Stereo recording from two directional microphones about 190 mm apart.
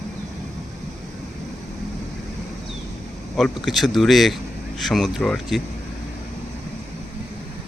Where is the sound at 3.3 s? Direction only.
Centre (ahead or behind).